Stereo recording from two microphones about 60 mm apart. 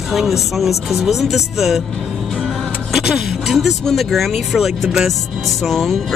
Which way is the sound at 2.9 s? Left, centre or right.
Centre.